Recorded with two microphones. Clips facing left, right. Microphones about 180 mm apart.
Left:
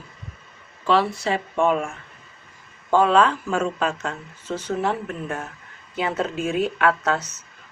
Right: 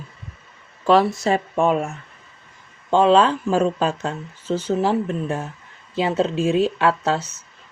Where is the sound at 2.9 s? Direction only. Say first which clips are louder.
Right 2 dB; 30° right (ahead or behind).